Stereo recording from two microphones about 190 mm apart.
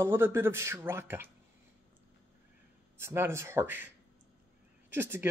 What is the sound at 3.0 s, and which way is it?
Speech, 15° right (ahead or behind).